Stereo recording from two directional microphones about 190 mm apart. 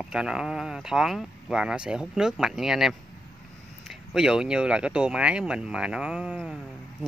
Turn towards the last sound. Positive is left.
turn(degrees=-5)  # may be behind; listen again after turning